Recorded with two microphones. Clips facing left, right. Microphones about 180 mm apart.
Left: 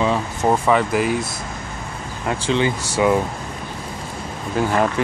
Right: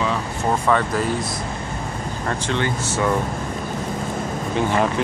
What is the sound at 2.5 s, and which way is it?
Speech, 20° left (ahead or behind).